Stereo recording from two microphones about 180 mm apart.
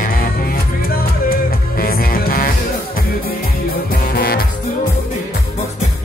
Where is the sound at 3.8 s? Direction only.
55° left (ahead or behind).